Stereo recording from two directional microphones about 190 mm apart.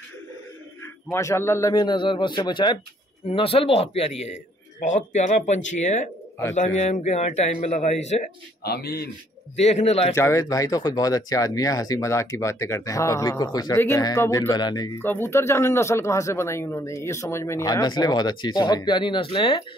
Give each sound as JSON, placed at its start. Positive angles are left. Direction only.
{"t": 1.1, "sound": "a man's voice", "side_deg": 15}
{"t": 8.6, "sound": "a man's voice", "side_deg": 55}
{"t": 9.6, "sound": "a man's voice", "side_deg": 35}
{"t": 10.1, "sound": "a man's voice", "side_deg": 15}